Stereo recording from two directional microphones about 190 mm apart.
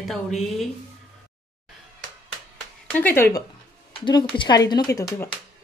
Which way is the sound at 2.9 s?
10° left (ahead or behind).